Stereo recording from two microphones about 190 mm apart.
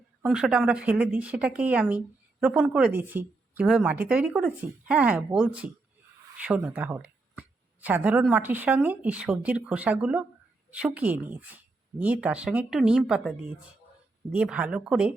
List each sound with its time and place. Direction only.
0.2 s speech: 5° right (ahead or behind)
14.3 s speech: 5° right (ahead or behind)